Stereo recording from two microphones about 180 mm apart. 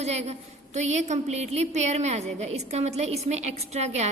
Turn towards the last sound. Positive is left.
turn(degrees=-35)  # may be behind; listen again after turning